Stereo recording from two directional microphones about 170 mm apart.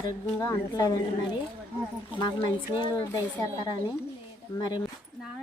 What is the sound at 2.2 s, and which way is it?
Speech, 30° left (ahead or behind).